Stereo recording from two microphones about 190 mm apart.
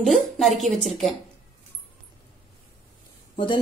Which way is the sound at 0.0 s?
Centre (ahead or behind).